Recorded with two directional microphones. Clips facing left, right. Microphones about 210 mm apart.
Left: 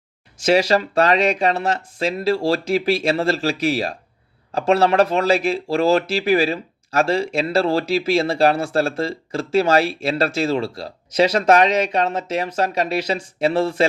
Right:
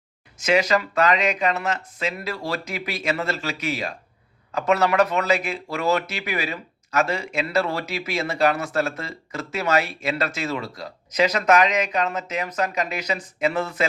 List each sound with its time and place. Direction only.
0.4 s speech: 30° left (ahead or behind)